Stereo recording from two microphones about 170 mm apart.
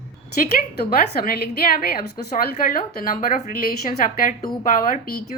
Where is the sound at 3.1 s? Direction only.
50° left (ahead or behind).